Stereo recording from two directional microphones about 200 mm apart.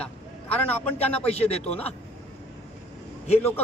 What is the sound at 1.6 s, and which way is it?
Speech, 10° left (ahead or behind).